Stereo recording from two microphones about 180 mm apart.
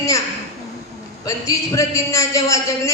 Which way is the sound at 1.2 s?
20° left (ahead or behind).